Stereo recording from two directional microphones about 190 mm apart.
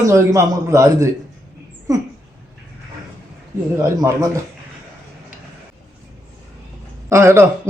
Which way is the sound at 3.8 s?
15° right (ahead or behind).